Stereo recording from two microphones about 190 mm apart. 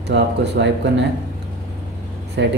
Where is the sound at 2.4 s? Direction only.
70° right (ahead or behind).